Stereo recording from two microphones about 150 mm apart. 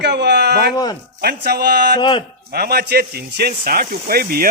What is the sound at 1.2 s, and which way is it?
Speech, 90° right.